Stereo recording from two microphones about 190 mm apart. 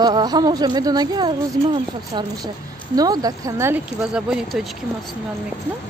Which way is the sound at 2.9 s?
20° right (ahead or behind).